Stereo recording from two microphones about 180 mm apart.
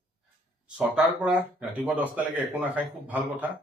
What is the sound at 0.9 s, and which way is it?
A man's voice, 5° right (ahead or behind).